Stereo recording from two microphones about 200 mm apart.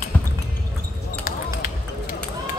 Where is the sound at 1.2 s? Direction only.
45° left (ahead or behind).